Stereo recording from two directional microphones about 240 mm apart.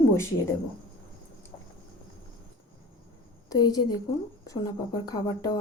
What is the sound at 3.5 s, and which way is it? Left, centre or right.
Speech, centre.